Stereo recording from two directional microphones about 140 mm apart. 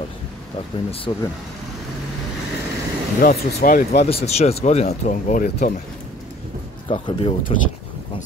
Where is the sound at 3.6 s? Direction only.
80° left.